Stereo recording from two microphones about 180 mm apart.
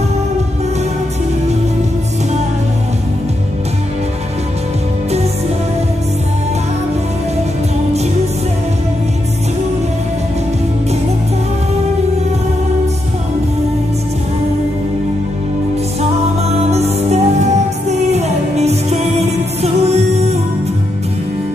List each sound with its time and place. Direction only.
16.7 s music: 35° right (ahead or behind)